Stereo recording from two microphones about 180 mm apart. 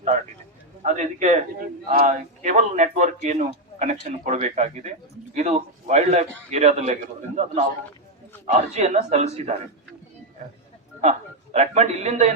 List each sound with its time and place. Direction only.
0.8 s a man's voice: 40° right (ahead or behind)
11.5 s a man's voice: 35° right (ahead or behind)